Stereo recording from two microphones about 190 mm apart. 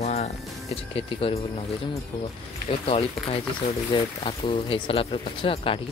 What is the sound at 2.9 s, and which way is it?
Speech, 30° left (ahead or behind).